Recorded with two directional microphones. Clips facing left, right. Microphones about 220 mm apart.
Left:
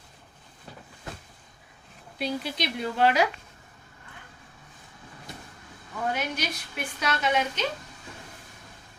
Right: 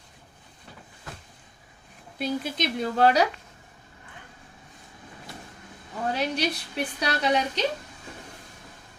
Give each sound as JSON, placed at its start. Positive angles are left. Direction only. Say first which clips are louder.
{"t": 2.1, "sound": "a woman's voice", "louder": "right 2 dB", "side_deg": -50}
{"t": 6.1, "sound": "a woman's voice", "louder": "right 5 dB", "side_deg": -35}